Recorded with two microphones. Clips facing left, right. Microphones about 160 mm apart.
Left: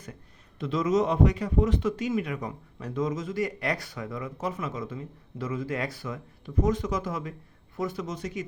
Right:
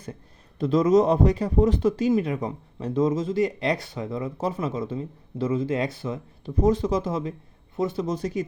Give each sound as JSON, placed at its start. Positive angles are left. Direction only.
{"t": 0.6, "sound": "a man's voice", "side_deg": -35}